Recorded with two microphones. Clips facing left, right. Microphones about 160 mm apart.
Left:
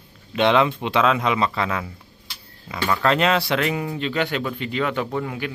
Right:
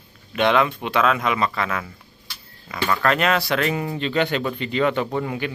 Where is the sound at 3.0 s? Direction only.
25° left (ahead or behind).